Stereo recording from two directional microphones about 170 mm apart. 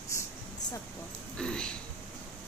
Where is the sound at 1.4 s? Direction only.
5° left (ahead or behind).